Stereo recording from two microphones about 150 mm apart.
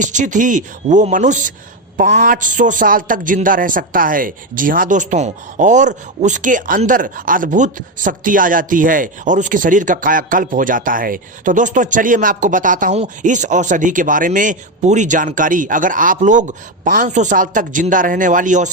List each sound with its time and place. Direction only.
0.0 s a man's voice: 55° right (ahead or behind)